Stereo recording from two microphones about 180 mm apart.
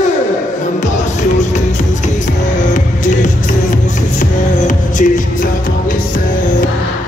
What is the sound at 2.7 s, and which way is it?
Music, 45° left (ahead or behind).